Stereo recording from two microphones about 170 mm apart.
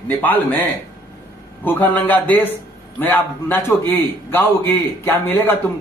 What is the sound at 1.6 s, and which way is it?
A man's voice, 10° left (ahead or behind).